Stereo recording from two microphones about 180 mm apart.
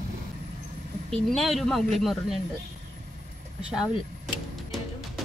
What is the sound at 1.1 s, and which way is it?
Speech, centre (ahead or behind).